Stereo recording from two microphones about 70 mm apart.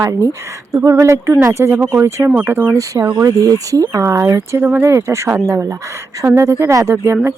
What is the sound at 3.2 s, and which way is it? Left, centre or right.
Speech, right.